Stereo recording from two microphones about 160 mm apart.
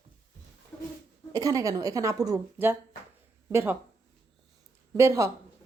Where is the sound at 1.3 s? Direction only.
20° right (ahead or behind).